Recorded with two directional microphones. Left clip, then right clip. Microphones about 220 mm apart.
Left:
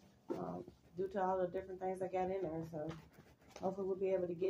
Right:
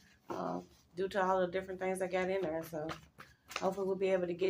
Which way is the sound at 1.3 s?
15° left (ahead or behind).